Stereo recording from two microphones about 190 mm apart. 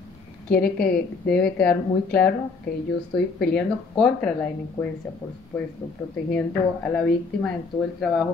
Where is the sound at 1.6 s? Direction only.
5° left (ahead or behind).